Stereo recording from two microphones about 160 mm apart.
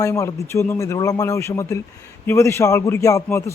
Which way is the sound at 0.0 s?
20° left (ahead or behind).